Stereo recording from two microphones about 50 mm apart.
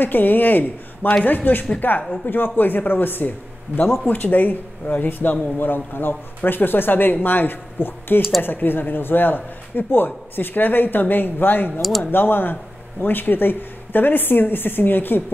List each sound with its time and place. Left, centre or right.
0.0 s speech: left